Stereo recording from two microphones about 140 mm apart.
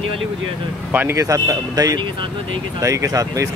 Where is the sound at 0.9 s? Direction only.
15° right (ahead or behind).